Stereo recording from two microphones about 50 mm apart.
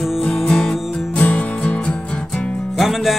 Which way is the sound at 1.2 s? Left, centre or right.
Left.